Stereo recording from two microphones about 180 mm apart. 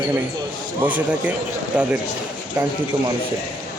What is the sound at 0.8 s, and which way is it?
Speech, 10° right (ahead or behind).